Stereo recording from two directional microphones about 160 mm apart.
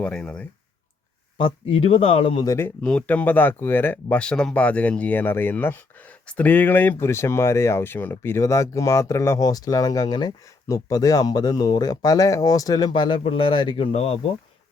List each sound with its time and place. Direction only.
0.0 s speech: 5° left (ahead or behind)
1.4 s speech: 30° left (ahead or behind)